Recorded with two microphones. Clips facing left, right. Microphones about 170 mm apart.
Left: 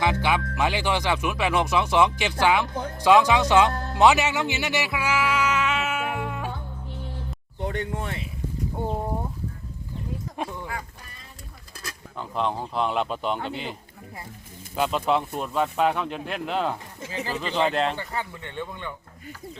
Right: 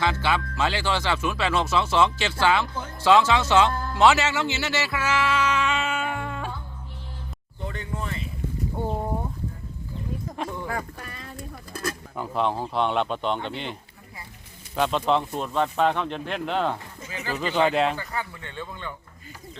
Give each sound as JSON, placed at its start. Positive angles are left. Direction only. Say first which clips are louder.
{"t": 0.0, "sound": "speech", "louder": "left 1 dB", "side_deg": 15}
{"t": 3.7, "sound": "speech", "louder": "right 1 dB", "side_deg": 75}
{"t": 3.9, "sound": "music", "louder": "left 1 dB", "side_deg": 15}
{"t": 7.6, "sound": "speech", "louder": "left 4 dB", "side_deg": 75}
{"t": 11.0, "sound": "boat", "louder": "right 8 dB", "side_deg": -75}
{"t": 11.7, "sound": "a sound", "louder": "right 10 dB", "side_deg": -50}
{"t": 12.1, "sound": "speech", "louder": "right 1 dB", "side_deg": -5}
{"t": 14.8, "sound": "speech", "louder": "right 1 dB", "side_deg": 5}
{"t": 17.1, "sound": "speech", "louder": "left 2 dB", "side_deg": 30}
{"t": 17.3, "sound": "speech", "louder": "right 3 dB", "side_deg": 0}
{"t": 17.9, "sound": "speech", "louder": "even", "side_deg": 25}